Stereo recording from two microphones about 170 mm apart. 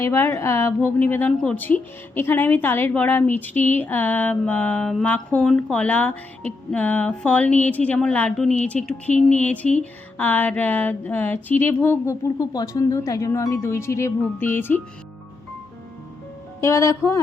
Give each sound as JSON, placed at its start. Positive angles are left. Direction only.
{"t": 0.0, "sound": "a woman's voice", "side_deg": 15}
{"t": 16.6, "sound": "a woman's voice", "side_deg": 15}